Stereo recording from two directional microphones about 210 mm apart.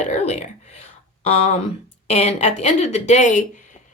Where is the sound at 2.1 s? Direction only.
30° left (ahead or behind).